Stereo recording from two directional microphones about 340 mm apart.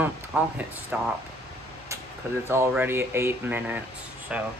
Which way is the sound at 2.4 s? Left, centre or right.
Centre.